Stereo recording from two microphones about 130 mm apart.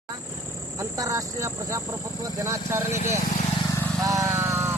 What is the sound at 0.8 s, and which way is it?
Speech, 25° right (ahead or behind).